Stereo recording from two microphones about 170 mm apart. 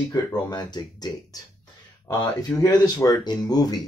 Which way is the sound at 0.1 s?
25° left (ahead or behind).